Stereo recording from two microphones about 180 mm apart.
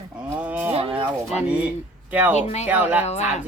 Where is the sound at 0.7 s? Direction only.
30° right (ahead or behind).